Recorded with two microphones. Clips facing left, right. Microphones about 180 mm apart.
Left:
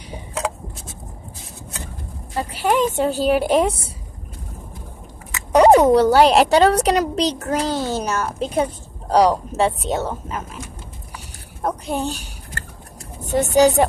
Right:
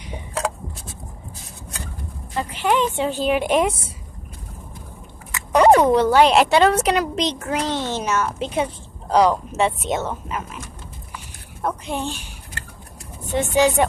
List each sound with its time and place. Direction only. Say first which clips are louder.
2.3 s a woman's voice: left 1 dB; 40° left (ahead or behind)
5.9 s a child's voice: left 2 dB; 35° left (ahead or behind)
11.6 s a woman's voice: left 2 dB; 40° left (ahead or behind)